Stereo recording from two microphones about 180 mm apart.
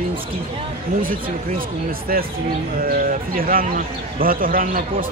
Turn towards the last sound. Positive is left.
turn(degrees=-50)  # may be behind; listen again after turning